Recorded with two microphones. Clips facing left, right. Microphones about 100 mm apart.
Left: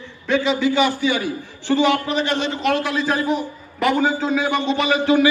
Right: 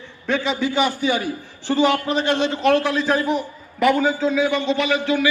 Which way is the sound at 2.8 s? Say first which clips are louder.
Right 1 dB; 15° left (ahead or behind).